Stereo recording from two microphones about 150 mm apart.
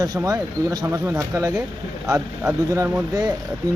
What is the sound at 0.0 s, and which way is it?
Speech, 25° right (ahead or behind).